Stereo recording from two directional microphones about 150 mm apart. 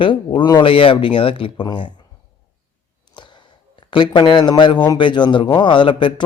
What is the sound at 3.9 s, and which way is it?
Speech, 30° left (ahead or behind).